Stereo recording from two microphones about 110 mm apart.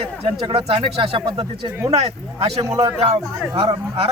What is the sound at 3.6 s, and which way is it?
Speech, 60° right (ahead or behind).